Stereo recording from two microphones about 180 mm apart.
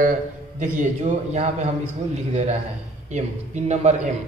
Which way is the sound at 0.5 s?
45° right (ahead or behind).